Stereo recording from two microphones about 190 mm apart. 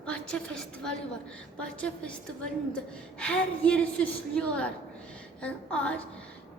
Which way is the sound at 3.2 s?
5° left (ahead or behind).